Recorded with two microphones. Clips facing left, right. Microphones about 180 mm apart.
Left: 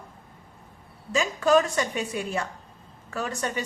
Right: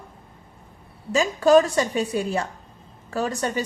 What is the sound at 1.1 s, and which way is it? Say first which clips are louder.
A woman's voice: right 5 dB; 35° right (ahead or behind).